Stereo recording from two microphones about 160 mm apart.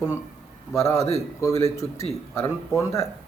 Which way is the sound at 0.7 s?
20° left (ahead or behind).